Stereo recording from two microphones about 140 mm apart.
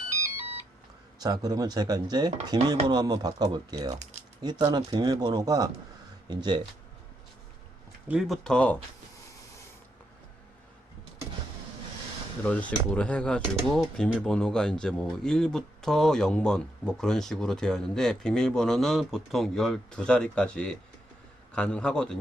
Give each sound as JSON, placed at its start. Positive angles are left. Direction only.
{"t": 1.2, "sound": "speech", "side_deg": -30}
{"t": 8.0, "sound": "speech", "side_deg": -5}
{"t": 12.5, "sound": "speech", "side_deg": 10}